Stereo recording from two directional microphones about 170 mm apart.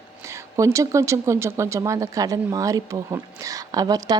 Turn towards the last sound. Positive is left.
turn(degrees=-20)  # may be behind; listen again after turning